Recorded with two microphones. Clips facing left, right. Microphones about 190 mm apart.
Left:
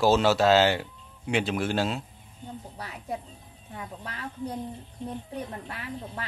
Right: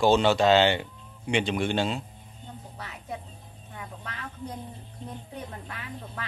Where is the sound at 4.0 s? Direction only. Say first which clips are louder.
Left 5 dB; 10° left (ahead or behind).